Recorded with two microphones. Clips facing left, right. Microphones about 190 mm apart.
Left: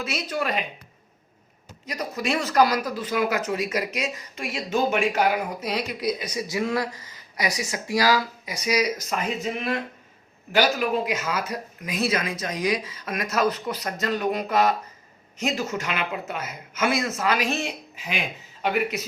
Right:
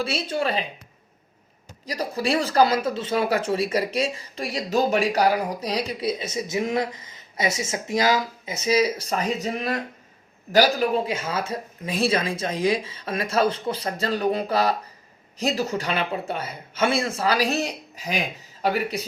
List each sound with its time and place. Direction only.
0.0 s speech: 30° right (ahead or behind)
1.9 s speech: 30° right (ahead or behind)